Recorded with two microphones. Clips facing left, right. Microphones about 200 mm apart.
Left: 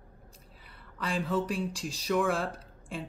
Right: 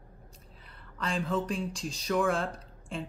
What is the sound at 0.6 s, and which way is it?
Speech, 5° left (ahead or behind).